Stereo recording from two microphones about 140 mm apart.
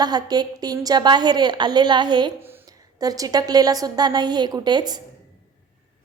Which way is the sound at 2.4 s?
15° right (ahead or behind).